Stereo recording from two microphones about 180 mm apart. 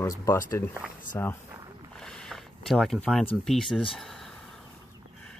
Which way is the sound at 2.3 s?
Centre (ahead or behind).